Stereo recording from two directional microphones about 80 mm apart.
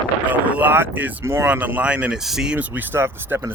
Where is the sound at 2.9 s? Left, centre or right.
Right.